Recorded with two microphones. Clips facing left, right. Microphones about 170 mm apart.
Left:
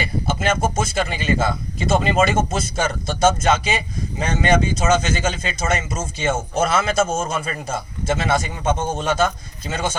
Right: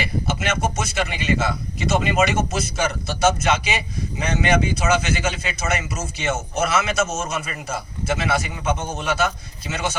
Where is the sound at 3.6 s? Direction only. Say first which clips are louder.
Left 2 dB; 30° left (ahead or behind).